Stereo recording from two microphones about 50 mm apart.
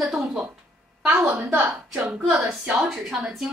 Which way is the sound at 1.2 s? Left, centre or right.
Right.